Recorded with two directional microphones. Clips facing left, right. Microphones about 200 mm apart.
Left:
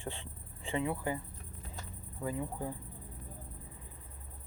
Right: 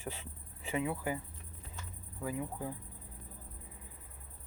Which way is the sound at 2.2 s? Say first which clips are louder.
Left 1 dB; 10° right (ahead or behind).